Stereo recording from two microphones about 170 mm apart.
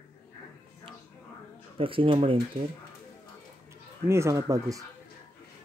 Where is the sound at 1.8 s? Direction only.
30° right (ahead or behind).